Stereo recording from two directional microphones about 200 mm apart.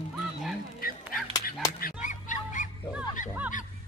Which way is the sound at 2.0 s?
40° left (ahead or behind).